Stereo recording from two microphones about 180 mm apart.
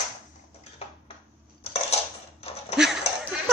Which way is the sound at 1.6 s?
35° left (ahead or behind).